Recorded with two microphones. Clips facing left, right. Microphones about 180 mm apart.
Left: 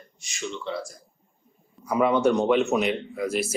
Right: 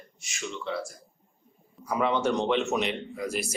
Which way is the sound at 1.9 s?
10° left (ahead or behind).